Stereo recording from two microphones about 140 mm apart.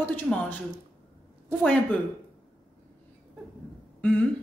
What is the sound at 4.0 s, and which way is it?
Throat clearing, 10° left (ahead or behind).